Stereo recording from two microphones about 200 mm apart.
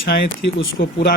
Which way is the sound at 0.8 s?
60° left (ahead or behind).